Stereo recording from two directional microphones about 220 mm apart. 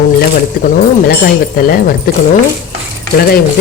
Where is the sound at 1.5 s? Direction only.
40° left (ahead or behind).